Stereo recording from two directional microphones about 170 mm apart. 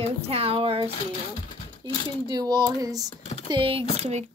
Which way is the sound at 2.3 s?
25° right (ahead or behind).